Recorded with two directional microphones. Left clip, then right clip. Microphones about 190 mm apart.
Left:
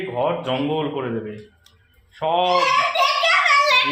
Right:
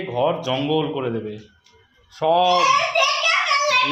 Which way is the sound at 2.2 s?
30° right (ahead or behind).